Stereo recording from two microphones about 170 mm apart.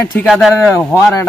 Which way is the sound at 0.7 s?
15° left (ahead or behind).